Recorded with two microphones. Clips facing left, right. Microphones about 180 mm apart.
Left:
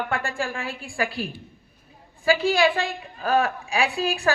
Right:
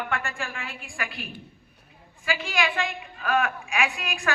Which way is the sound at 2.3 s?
35° left (ahead or behind).